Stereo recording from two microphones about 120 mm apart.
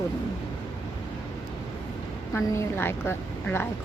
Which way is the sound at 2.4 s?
20° left (ahead or behind).